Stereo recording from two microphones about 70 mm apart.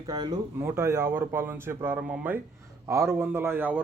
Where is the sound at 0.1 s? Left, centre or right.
Right.